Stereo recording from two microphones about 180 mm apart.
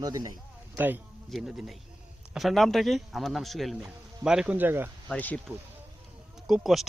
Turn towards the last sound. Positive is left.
turn(degrees=0)  # may be behind; listen again after turning